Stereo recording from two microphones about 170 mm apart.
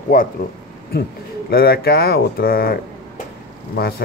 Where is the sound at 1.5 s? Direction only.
65° left (ahead or behind).